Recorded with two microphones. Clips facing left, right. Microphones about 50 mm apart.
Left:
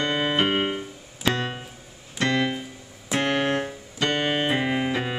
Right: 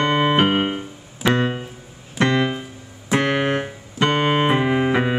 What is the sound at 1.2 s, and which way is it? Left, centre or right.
Piano, right.